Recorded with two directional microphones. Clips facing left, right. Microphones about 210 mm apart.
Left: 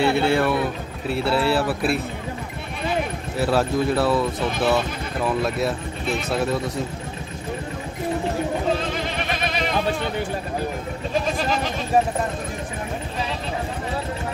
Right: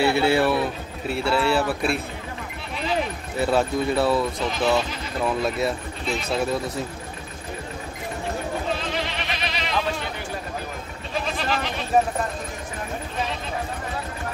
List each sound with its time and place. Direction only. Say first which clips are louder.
0.0 s speech: even; 5° right (ahead or behind)
3.3 s speech: left 1 dB; centre (ahead or behind)
9.0 s goat: left 4 dB; 45° left (ahead or behind)